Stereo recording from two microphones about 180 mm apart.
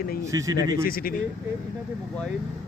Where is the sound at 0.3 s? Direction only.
20° right (ahead or behind).